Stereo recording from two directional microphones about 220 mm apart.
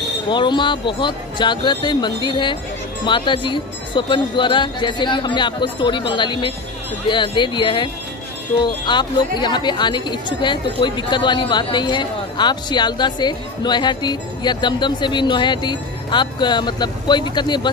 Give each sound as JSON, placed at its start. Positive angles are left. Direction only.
{"t": 0.3, "sound": "a woman's voice", "side_deg": 20}